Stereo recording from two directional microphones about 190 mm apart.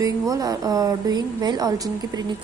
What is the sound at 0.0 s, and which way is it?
A woman's voice, 20° right (ahead or behind).